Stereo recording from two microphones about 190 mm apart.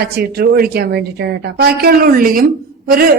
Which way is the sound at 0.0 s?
55° right (ahead or behind).